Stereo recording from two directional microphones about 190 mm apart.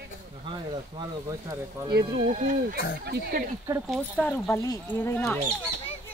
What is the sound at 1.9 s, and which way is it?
Speech, 55° right (ahead or behind).